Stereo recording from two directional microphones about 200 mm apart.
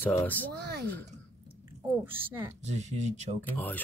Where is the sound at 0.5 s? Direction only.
55° right (ahead or behind).